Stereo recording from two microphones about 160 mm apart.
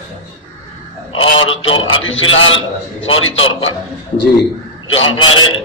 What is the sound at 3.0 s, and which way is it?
Speech, 35° left (ahead or behind).